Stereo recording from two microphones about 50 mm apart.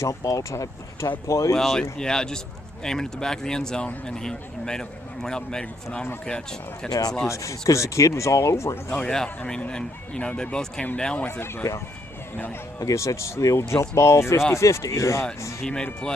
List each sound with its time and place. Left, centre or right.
0.0 s speech: left
1.5 s speech: centre
7.2 s speech: left
9.0 s speech: centre
11.1 s speech: left
11.6 s speech: left
12.9 s speech: left
15.6 s speech: centre